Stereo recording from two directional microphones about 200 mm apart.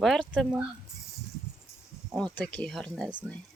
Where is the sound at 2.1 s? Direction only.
5° left (ahead or behind).